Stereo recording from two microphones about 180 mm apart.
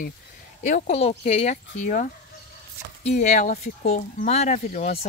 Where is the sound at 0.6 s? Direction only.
40° left (ahead or behind).